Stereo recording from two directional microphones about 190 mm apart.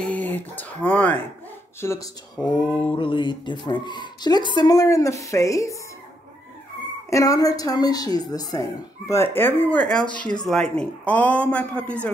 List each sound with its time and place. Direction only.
0.0 s a sound: 5° left (ahead or behind)
0.4 s a woman's voice: 10° left (ahead or behind)
7.1 s a woman's voice: 15° left (ahead or behind)